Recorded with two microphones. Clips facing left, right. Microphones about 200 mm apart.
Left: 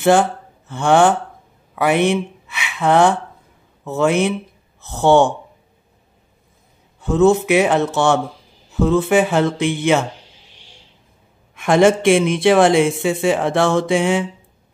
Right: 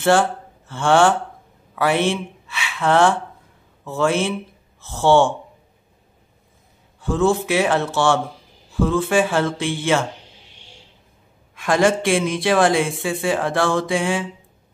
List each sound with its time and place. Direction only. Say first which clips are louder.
0.0 s speech: left 3 dB; 15° left (ahead or behind)
7.0 s speech: left 5 dB; 20° left (ahead or behind)
11.5 s speech: left 4 dB; 20° left (ahead or behind)